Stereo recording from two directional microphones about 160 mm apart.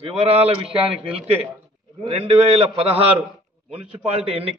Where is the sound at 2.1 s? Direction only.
40° right (ahead or behind).